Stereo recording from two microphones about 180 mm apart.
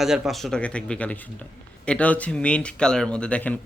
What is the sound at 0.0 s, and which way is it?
Speech, centre (ahead or behind).